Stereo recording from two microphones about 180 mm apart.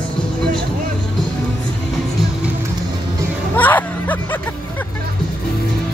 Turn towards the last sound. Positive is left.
turn(degrees=10)  # may be behind; listen again after turning